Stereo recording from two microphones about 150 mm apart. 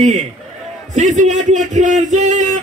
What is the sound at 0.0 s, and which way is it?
Speech, 50° right (ahead or behind).